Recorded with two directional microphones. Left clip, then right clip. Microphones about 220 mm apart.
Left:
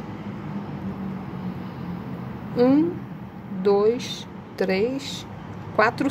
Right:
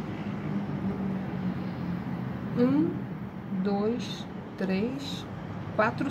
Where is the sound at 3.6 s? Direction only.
40° left (ahead or behind).